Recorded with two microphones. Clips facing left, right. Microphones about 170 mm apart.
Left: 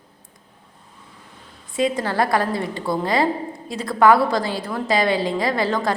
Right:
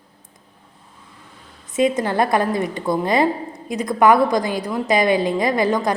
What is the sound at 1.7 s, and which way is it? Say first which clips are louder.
A woman's voice: right 3 dB; 20° right (ahead or behind).